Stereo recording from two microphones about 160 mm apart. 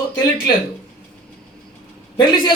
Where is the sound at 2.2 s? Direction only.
30° left (ahead or behind).